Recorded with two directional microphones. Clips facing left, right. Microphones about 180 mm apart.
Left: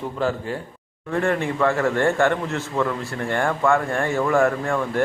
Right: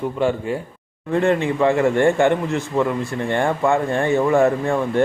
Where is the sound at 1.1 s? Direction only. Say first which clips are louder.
Right 4 dB; 20° right (ahead or behind).